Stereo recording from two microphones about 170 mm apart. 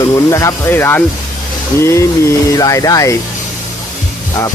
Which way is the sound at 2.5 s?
20° left (ahead or behind).